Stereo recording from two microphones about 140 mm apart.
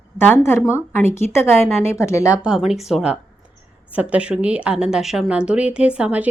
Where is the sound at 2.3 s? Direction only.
5° right (ahead or behind).